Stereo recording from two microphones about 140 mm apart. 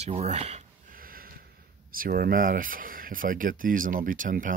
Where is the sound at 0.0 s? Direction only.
50° right (ahead or behind).